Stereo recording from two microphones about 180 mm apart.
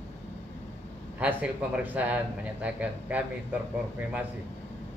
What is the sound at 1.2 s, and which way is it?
A man's voice, 5° right (ahead or behind).